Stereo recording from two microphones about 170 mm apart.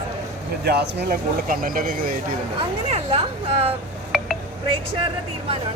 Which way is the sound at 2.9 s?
35° right (ahead or behind).